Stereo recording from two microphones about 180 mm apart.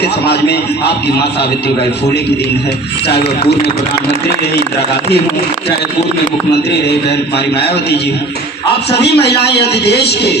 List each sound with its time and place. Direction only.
0.0 s a man's voice: 65° left (ahead or behind)
8.9 s a man's voice: 65° left (ahead or behind)